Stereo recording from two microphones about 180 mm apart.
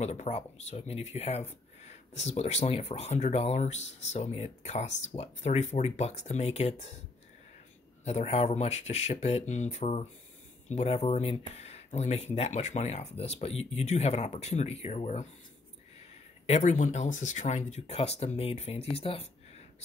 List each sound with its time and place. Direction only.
0.0 s speech: 35° left (ahead or behind)
8.0 s speech: 35° left (ahead or behind)
16.4 s speech: 40° left (ahead or behind)